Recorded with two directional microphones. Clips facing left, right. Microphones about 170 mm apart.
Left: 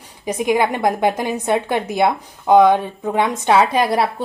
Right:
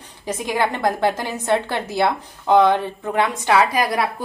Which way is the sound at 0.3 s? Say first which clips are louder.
Left 4 dB; 20° left (ahead or behind).